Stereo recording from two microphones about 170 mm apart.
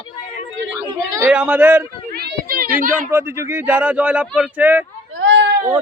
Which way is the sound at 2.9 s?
15° right (ahead or behind).